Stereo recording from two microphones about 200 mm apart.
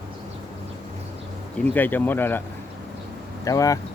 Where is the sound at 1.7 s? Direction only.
10° left (ahead or behind).